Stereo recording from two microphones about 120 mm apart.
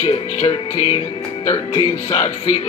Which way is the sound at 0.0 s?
55° left (ahead or behind).